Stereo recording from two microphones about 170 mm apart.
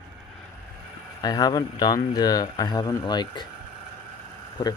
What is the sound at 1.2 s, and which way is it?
Speech, 20° left (ahead or behind).